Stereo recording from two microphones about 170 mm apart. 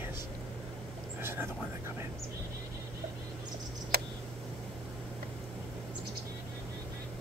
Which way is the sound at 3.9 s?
65° right (ahead or behind).